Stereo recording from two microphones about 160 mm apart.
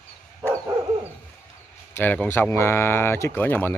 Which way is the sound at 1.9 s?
10° left (ahead or behind).